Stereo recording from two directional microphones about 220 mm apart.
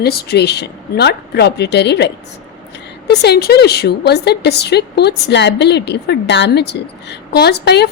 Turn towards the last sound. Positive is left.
turn(degrees=50)  # may be behind; listen again after turning